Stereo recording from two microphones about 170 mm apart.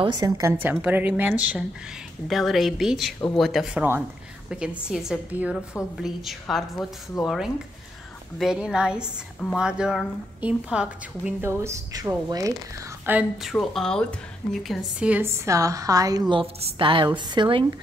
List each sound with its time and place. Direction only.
0.0 s a woman's voice: 20° right (ahead or behind)
13.0 s a woman's voice: 10° right (ahead or behind); by 17.7 s 30° right (ahead or behind)